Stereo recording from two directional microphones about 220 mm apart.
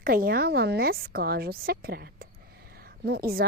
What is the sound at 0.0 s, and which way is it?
A woman's voice, 40° right (ahead or behind).